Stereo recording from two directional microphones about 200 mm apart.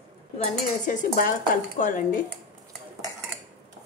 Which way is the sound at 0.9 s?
40° left (ahead or behind).